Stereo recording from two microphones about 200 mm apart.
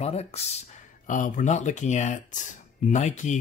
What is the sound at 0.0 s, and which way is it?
Speech, 30° left (ahead or behind).